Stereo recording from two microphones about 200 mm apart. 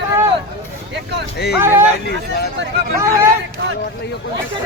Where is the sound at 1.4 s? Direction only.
55° left (ahead or behind).